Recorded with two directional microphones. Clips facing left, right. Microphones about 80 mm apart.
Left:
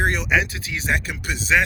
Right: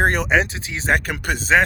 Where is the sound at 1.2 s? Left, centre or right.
Right.